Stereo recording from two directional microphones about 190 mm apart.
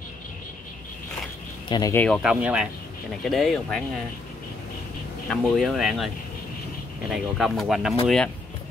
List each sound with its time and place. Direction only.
1.7 s speech: 15° left (ahead or behind)
2.0 s speech: 5° right (ahead or behind)
5.3 s speech: centre (ahead or behind)
7.1 s speech: centre (ahead or behind)